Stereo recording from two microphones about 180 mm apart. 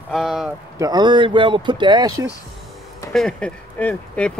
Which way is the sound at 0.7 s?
20° right (ahead or behind).